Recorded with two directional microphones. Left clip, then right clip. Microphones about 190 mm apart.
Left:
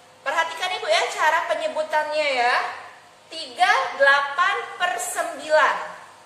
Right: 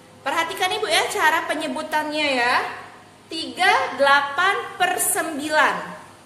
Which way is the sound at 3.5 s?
40° right (ahead or behind).